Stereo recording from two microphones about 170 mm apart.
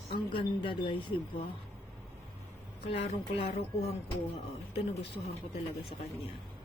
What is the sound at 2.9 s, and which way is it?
Speech, 35° left (ahead or behind).